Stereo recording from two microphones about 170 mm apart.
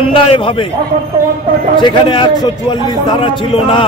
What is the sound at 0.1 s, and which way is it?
Speech, 30° left (ahead or behind).